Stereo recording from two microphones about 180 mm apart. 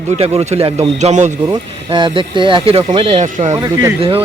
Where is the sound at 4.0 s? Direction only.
30° right (ahead or behind).